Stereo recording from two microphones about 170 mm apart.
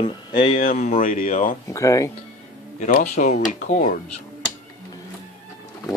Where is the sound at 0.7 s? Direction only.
45° left (ahead or behind).